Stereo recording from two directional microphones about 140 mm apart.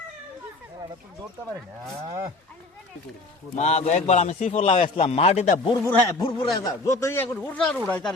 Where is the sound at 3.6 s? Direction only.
55° left (ahead or behind).